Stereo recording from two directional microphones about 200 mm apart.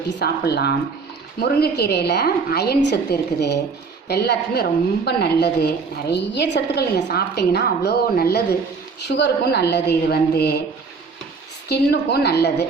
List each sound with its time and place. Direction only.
0.1 s a woman's voice: 60° left (ahead or behind)
11.7 s a woman's voice: 55° left (ahead or behind)